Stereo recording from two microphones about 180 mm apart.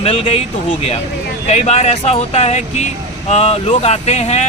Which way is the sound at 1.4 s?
35° left (ahead or behind).